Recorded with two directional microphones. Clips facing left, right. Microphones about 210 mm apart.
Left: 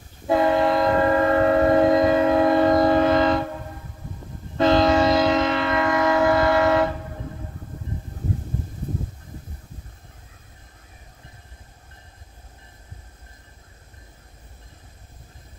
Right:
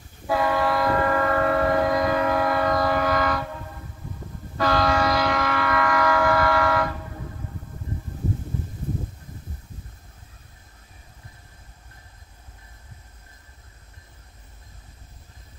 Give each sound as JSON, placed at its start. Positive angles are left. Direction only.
{"t": 0.3, "sound": "train", "side_deg": 25}
{"t": 4.6, "sound": "train", "side_deg": 25}